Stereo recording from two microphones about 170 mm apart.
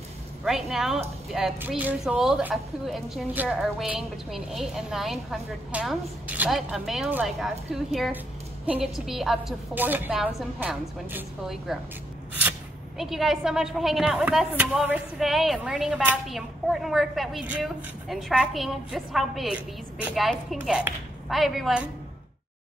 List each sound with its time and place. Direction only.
0.5 s speech: centre (ahead or behind)